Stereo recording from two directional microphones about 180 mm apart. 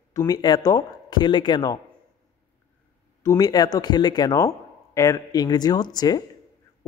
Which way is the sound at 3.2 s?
20° left (ahead or behind).